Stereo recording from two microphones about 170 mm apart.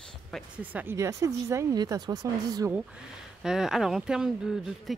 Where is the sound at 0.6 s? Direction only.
10° right (ahead or behind).